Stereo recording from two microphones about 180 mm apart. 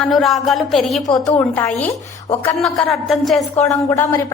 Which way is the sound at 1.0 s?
20° left (ahead or behind).